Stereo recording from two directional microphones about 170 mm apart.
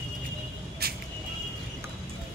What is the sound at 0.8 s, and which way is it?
Vehicle, 70° right (ahead or behind).